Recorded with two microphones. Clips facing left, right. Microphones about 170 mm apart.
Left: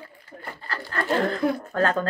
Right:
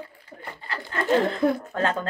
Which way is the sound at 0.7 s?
20° right (ahead or behind).